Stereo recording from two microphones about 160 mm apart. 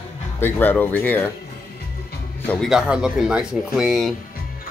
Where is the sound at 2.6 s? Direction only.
5° right (ahead or behind).